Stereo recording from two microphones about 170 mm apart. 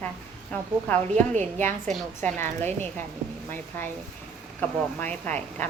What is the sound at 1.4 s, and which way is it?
Speech, 10° left (ahead or behind).